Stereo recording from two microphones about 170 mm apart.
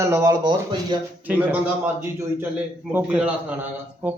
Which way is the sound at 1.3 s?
10° right (ahead or behind).